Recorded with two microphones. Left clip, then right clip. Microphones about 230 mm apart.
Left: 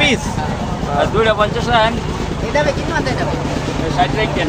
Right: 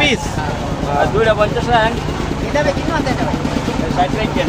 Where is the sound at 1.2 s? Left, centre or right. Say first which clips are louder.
Even; left.